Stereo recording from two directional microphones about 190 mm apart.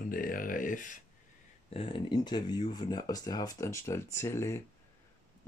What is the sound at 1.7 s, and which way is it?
Speech, 30° left (ahead or behind).